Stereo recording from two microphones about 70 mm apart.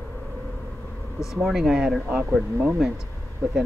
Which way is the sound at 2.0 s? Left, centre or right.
Right.